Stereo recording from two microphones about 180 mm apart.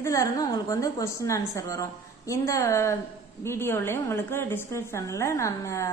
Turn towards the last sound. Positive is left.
turn(degrees=15)  # may be behind; listen again after turning